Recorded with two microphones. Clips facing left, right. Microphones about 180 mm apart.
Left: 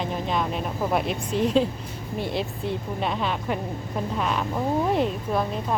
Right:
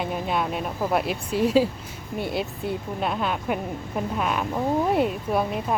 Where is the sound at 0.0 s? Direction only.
5° right (ahead or behind).